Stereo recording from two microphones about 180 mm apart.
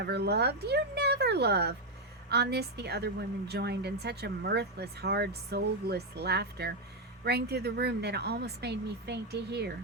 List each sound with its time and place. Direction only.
0.0 s a woman's voice: 70° right (ahead or behind)